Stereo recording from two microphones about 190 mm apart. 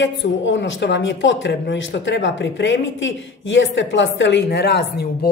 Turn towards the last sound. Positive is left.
turn(degrees=60)  # may be behind; listen again after turning